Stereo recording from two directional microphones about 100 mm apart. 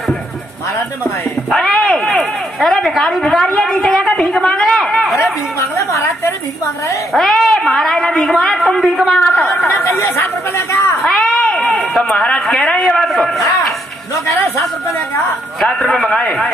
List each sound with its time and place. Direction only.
1.5 s a sound: 5° left (ahead or behind)
5.6 s a sound: 30° left (ahead or behind)
7.1 s a woman's voice: centre (ahead or behind)
9.8 s speech: 30° left (ahead or behind)
11.2 s speech: 10° left (ahead or behind)
15.6 s a man's voice: 5° left (ahead or behind)